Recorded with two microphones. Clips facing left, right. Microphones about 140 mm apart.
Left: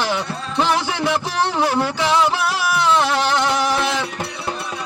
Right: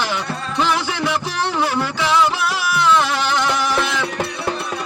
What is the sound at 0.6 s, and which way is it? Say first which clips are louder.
Music: left 1 dB; 30° left (ahead or behind).